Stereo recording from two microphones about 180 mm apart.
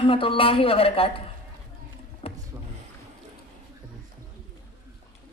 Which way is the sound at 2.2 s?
30° left (ahead or behind).